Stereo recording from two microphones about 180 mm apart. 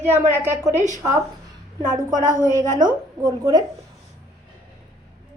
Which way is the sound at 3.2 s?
20° right (ahead or behind).